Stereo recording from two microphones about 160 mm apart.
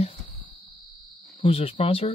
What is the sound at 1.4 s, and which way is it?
Speech, 35° left (ahead or behind).